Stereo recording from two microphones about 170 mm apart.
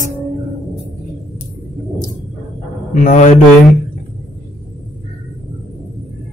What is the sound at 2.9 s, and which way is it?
Speech, 50° left (ahead or behind).